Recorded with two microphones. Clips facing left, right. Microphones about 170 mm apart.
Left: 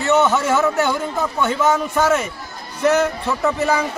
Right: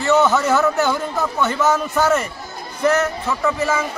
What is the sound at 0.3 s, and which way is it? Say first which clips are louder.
Speech: right 1 dB; centre (ahead or behind).